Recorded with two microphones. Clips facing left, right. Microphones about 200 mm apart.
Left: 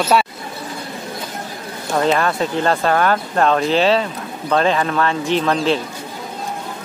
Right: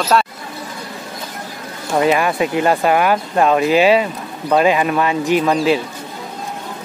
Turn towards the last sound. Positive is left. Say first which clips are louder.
# right 2 dB
turn(degrees=-10)  # may be behind; listen again after turning